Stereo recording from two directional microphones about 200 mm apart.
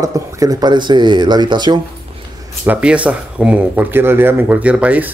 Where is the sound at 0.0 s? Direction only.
15° right (ahead or behind).